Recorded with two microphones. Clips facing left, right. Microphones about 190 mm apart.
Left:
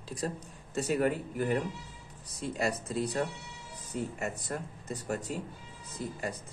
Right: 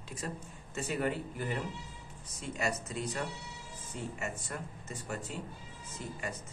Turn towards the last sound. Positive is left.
turn(degrees=35)  # may be behind; listen again after turning